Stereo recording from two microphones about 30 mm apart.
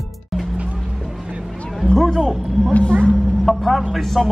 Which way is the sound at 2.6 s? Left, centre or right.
Centre.